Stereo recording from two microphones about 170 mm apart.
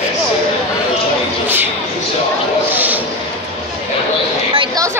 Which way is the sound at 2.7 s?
10° right (ahead or behind).